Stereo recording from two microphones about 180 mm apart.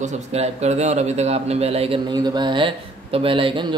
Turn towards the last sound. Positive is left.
turn(degrees=-30)  # may be behind; listen again after turning